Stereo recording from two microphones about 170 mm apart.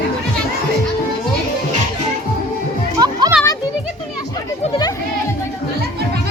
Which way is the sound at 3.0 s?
25° right (ahead or behind).